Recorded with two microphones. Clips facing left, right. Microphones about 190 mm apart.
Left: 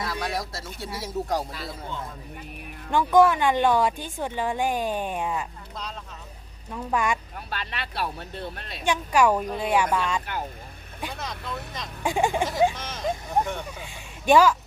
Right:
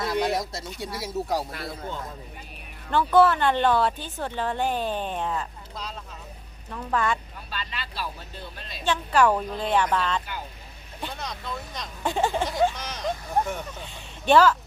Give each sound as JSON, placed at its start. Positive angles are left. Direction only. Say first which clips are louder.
{"t": 0.0, "sound": "a sound", "louder": "right 5 dB", "side_deg": -20}
{"t": 1.0, "sound": "speech", "louder": "even", "side_deg": -5}
{"t": 2.9, "sound": "a woman's voice", "louder": "left 1 dB", "side_deg": 10}
{"t": 6.7, "sound": "a woman's voice", "louder": "even", "side_deg": 10}
{"t": 7.3, "sound": "speech", "louder": "left 2 dB", "side_deg": 60}
{"t": 8.8, "sound": "a woman's voice", "louder": "even", "side_deg": 10}
{"t": 12.7, "sound": "speech", "louder": "left 1 dB", "side_deg": 0}
{"t": 13.7, "sound": "a sound", "louder": "even", "side_deg": 10}